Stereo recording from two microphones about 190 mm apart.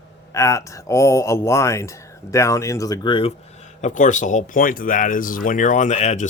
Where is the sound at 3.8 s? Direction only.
40° left (ahead or behind).